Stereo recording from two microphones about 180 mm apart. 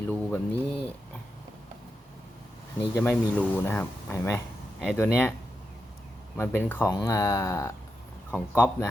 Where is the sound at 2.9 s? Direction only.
10° left (ahead or behind).